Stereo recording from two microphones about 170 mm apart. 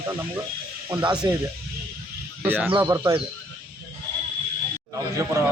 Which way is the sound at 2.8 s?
20° right (ahead or behind).